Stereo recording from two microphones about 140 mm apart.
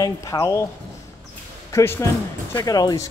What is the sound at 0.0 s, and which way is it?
Speech, 25° left (ahead or behind).